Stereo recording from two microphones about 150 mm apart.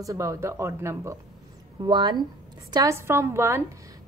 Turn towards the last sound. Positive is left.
turn(degrees=-20)  # may be behind; listen again after turning